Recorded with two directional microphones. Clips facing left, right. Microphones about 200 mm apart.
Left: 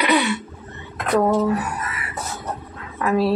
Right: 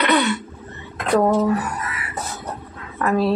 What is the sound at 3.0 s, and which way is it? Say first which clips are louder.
Speech: even; 5° left (ahead or behind).